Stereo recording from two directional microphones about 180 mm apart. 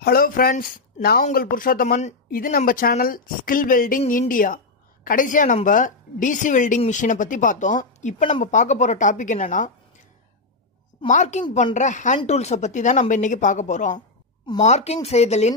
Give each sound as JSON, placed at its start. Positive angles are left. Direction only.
{"t": 0.0, "sound": "speech", "side_deg": 55}
{"t": 11.1, "sound": "speech", "side_deg": 40}